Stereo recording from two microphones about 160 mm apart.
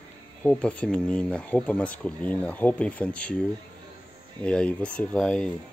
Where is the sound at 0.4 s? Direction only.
5° left (ahead or behind).